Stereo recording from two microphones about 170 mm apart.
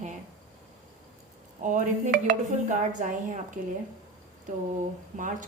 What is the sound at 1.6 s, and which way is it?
A woman's voice, 50° right (ahead or behind).